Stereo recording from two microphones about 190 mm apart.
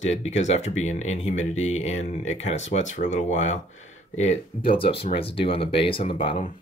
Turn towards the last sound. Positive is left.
turn(degrees=25)  # may be behind; listen again after turning